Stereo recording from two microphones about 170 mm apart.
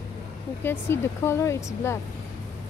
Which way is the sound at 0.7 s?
15° left (ahead or behind).